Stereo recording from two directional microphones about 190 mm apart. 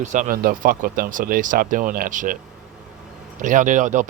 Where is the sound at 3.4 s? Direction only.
45° right (ahead or behind).